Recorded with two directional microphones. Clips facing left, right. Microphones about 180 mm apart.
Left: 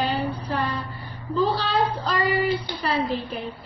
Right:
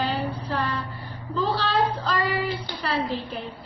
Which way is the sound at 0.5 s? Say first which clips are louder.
Left 1 dB; 15° left (ahead or behind).